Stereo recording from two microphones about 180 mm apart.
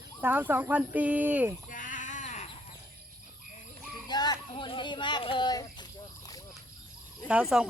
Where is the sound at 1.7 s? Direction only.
45° left (ahead or behind).